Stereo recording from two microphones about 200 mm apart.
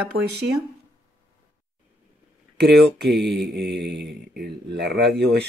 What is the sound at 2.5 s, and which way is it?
Speech, 55° right (ahead or behind).